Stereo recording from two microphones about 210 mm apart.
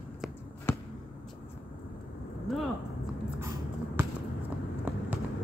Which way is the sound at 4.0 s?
10° right (ahead or behind).